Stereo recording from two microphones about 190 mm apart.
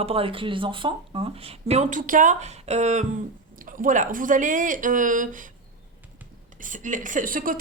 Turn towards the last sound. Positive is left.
turn(degrees=-45)  # may be behind; listen again after turning